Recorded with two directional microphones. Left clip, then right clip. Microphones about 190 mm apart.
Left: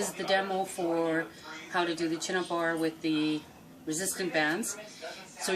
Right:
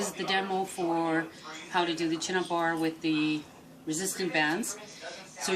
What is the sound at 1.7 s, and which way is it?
Speech, 15° left (ahead or behind).